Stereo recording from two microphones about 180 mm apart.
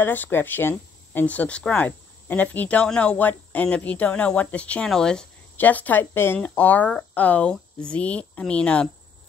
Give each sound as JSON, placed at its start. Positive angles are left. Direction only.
{"t": 0.0, "sound": "speech", "side_deg": 10}